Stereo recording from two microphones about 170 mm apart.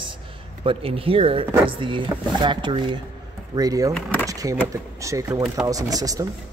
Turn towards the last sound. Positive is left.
turn(degrees=-20)  # may be behind; listen again after turning